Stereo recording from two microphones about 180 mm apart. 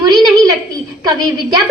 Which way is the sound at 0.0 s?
20° right (ahead or behind).